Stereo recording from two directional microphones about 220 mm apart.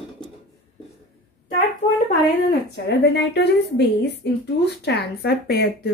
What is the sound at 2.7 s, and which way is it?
A woman's voice, 50° left (ahead or behind).